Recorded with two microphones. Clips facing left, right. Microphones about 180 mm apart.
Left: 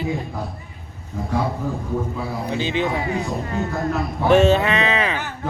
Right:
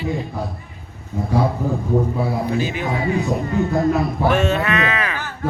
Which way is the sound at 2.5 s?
25° left (ahead or behind).